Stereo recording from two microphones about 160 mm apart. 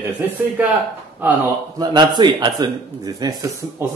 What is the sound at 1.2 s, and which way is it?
Speech, 10° right (ahead or behind).